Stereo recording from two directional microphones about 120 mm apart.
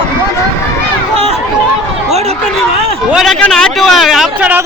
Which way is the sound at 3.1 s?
Centre (ahead or behind).